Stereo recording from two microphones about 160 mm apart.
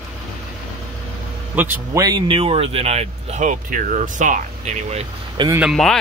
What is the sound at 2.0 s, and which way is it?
Speech, 30° right (ahead or behind).